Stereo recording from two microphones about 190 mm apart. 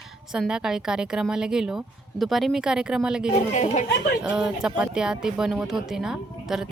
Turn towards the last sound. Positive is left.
turn(degrees=-5)  # may be behind; listen again after turning